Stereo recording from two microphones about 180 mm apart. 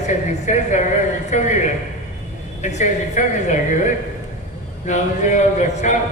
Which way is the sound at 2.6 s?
40° left (ahead or behind).